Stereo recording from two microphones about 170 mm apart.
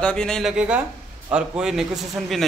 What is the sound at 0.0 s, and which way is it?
A man's voice, 5° left (ahead or behind).